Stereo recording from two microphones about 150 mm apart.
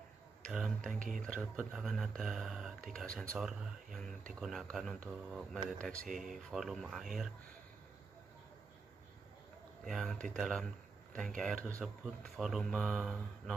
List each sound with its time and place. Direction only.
0.5 s a sound: 5° right (ahead or behind)
0.9 s speech: 60° right (ahead or behind)
1.6 s speech: 5° right (ahead or behind)
9.8 s speech: centre (ahead or behind)